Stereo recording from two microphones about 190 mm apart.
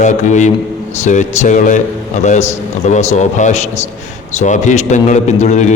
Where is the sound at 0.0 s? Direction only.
40° left (ahead or behind).